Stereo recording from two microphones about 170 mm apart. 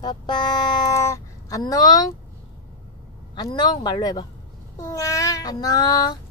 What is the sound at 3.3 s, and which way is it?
Speech, 25° left (ahead or behind).